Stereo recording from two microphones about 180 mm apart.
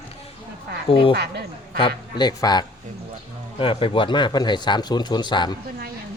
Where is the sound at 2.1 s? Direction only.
25° left (ahead or behind).